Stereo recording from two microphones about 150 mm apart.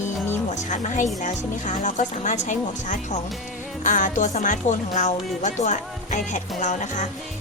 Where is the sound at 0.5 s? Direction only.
55° left (ahead or behind).